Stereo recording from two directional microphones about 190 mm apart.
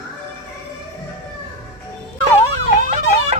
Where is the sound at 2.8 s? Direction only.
35° right (ahead or behind).